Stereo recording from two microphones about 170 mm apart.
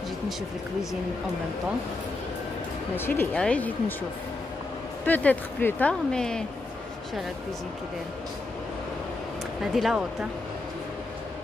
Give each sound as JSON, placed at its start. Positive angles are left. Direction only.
{"t": 3.0, "sound": "speech", "side_deg": 10}
{"t": 5.0, "sound": "speech", "side_deg": 10}
{"t": 9.6, "sound": "speech", "side_deg": 0}